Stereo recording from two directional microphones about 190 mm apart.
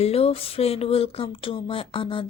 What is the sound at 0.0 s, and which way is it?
Speech, 30° left (ahead or behind).